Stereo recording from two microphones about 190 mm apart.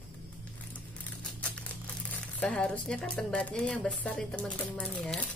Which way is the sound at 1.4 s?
5° left (ahead or behind).